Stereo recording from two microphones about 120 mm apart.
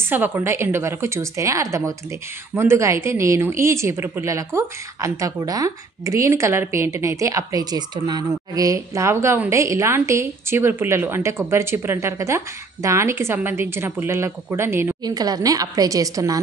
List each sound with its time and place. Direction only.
0.0 s a woman's voice: 15° right (ahead or behind)
15.0 s a woman's voice: 35° right (ahead or behind)